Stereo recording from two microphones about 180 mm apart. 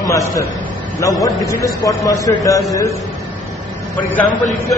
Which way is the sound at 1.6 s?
20° left (ahead or behind).